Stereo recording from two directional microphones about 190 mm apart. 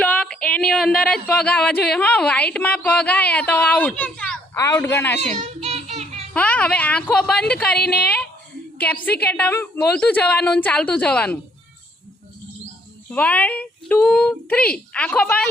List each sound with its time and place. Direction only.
0.0 s a woman's voice: 5° left (ahead or behind)
5.2 s child singing: 35° right (ahead or behind)
6.3 s a woman's voice: 5° left (ahead or behind)
7.8 s a woman's voice: 55° left (ahead or behind)
8.8 s a woman's voice: 10° left (ahead or behind)
13.1 s a woman's voice: 10° left (ahead or behind)